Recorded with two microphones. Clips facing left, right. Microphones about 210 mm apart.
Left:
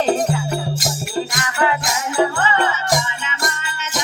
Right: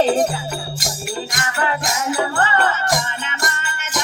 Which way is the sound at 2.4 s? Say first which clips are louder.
Even; 55° right (ahead or behind).